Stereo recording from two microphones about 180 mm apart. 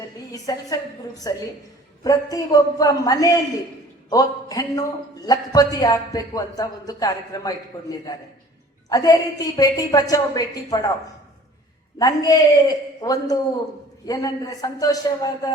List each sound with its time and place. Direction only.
0.3 s a man's voice: 20° left (ahead or behind)
11.9 s a man's voice: 20° left (ahead or behind)